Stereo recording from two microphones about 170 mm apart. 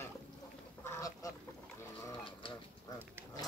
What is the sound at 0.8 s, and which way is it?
Goose, 20° left (ahead or behind).